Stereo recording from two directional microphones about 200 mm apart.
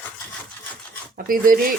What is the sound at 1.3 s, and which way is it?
Speech, 45° right (ahead or behind).